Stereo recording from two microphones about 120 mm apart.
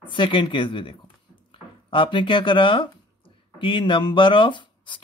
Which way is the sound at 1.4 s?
45° left (ahead or behind).